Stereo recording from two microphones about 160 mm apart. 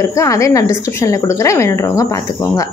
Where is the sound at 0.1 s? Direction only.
20° left (ahead or behind).